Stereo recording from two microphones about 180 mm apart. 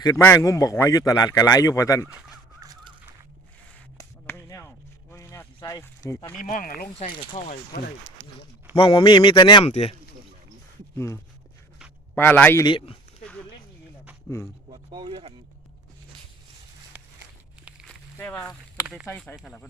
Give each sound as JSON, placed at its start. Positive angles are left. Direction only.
{"t": 0.0, "sound": "speech", "side_deg": 15}
{"t": 2.6, "sound": "crow", "side_deg": -20}
{"t": 3.9, "sound": "finger snapping", "side_deg": 15}
{"t": 5.1, "sound": "a sound", "side_deg": 15}
{"t": 6.4, "sound": "speech", "side_deg": 45}
{"t": 7.3, "sound": "speech", "side_deg": 35}
{"t": 8.7, "sound": "speech", "side_deg": 30}
{"t": 10.9, "sound": "speech", "side_deg": 15}
{"t": 12.6, "sound": "a sound", "side_deg": 30}
{"t": 14.7, "sound": "speech", "side_deg": -25}
{"t": 17.7, "sound": "walk", "side_deg": -5}
{"t": 18.2, "sound": "speech", "side_deg": 10}
{"t": 19.0, "sound": "speech", "side_deg": 10}